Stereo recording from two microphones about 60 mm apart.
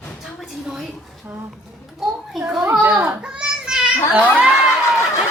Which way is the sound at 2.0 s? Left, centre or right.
Centre.